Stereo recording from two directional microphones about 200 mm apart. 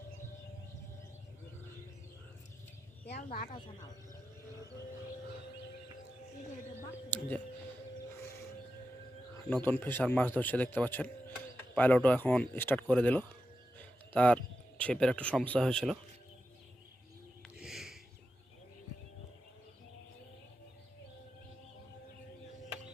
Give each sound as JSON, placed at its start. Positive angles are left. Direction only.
{"t": 3.2, "sound": "speech", "side_deg": 45}
{"t": 7.1, "sound": "speech", "side_deg": 10}
{"t": 9.5, "sound": "speech", "side_deg": 10}
{"t": 17.4, "sound": "a sound", "side_deg": 0}